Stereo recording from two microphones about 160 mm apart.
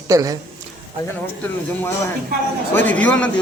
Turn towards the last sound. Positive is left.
turn(degrees=10)  # may be behind; listen again after turning